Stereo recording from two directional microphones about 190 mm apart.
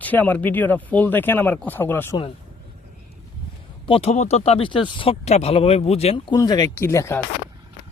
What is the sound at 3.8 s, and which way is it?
Speech, 30° left (ahead or behind).